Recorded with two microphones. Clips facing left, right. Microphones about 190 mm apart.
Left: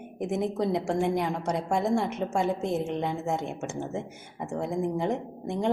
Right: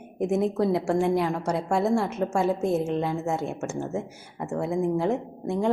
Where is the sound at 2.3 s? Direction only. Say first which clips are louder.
Right 4 dB; 15° left (ahead or behind).